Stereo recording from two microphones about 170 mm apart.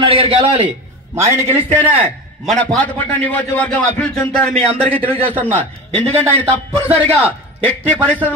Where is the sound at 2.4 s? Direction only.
5° left (ahead or behind).